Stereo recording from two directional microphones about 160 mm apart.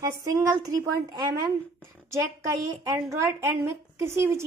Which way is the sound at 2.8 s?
15° right (ahead or behind).